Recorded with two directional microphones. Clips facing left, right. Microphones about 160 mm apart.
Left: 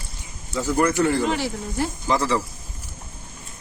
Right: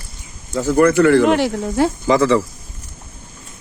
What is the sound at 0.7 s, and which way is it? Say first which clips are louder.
Speech: right 8 dB; 60° right (ahead or behind).